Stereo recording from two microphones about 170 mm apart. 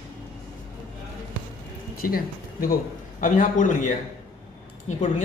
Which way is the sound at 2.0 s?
60° left (ahead or behind).